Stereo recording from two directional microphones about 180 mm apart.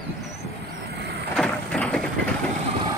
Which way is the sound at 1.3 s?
5° left (ahead or behind).